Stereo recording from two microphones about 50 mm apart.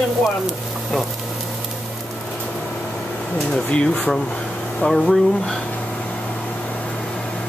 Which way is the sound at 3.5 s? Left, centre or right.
Centre.